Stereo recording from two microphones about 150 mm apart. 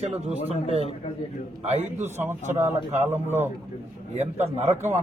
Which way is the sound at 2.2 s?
15° right (ahead or behind).